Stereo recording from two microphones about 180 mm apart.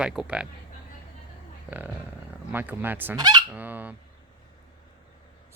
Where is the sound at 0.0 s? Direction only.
5° right (ahead or behind).